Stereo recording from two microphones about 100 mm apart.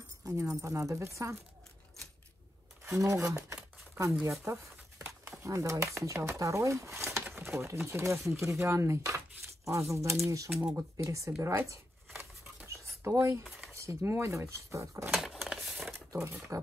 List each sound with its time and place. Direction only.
0.2 s speech: 30° right (ahead or behind)
2.8 s a sound: 30° right (ahead or behind)
4.5 s crumpling: 25° right (ahead or behind)
5.4 s speech: 35° right (ahead or behind)
10.5 s speech: 5° right (ahead or behind)
10.8 s speech: 30° right (ahead or behind)
11.4 s a sound: 25° right (ahead or behind)
13.7 s speech: 25° right (ahead or behind)
15.1 s a sound: 5° right (ahead or behind)
15.9 s speech: 30° right (ahead or behind)